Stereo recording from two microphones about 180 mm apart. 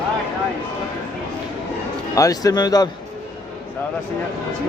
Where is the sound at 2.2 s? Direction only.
20° left (ahead or behind).